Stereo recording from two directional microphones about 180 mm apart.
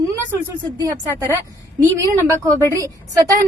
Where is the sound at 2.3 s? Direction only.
20° right (ahead or behind).